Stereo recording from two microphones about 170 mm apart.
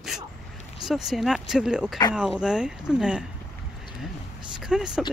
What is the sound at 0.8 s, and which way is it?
Speech, centre (ahead or behind).